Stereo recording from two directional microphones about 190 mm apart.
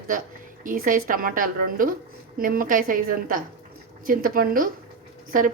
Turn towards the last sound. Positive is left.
turn(degrees=-45)  # may be behind; listen again after turning